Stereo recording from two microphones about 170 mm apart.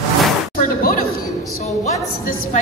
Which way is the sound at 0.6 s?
55° left (ahead or behind).